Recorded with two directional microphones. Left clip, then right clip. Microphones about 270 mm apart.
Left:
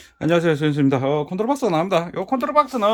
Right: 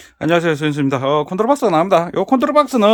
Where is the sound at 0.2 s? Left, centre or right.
Centre.